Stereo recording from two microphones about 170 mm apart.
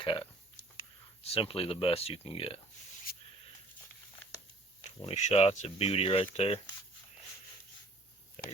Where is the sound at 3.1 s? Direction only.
65° left (ahead or behind).